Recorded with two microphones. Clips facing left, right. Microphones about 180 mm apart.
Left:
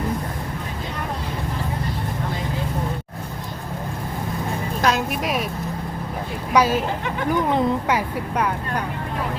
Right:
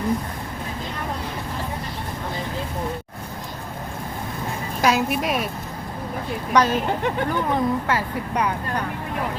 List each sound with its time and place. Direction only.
4.8 s a woman's voice: 5° right (ahead or behind)
6.5 s speech: 10° left (ahead or behind)